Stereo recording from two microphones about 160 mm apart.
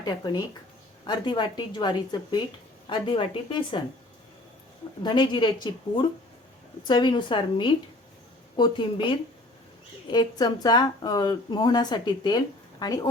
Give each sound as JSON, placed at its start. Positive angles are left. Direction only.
{"t": 0.0, "sound": "a woman's voice", "side_deg": 25}
{"t": 5.0, "sound": "a woman's voice", "side_deg": 30}
{"t": 6.8, "sound": "a woman's voice", "side_deg": 30}